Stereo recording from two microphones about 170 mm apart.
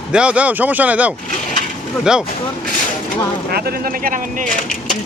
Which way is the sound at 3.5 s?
65° right (ahead or behind).